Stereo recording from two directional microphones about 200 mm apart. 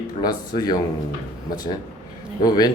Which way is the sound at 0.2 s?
20° left (ahead or behind).